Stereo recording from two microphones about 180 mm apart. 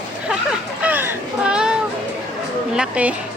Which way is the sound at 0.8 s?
10° right (ahead or behind).